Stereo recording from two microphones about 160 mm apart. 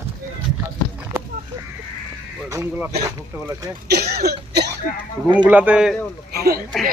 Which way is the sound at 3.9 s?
90° right.